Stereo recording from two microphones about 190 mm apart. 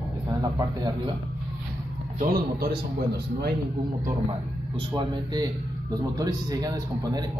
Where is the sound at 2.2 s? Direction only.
50° right (ahead or behind).